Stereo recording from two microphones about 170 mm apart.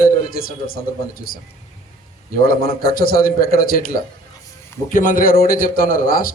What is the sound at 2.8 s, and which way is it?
A man's voice, 60° left (ahead or behind).